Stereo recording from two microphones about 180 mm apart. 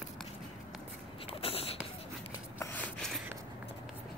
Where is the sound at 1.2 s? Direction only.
30° left (ahead or behind).